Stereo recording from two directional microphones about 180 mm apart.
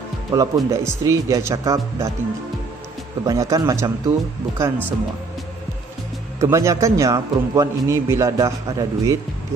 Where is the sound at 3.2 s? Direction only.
20° right (ahead or behind).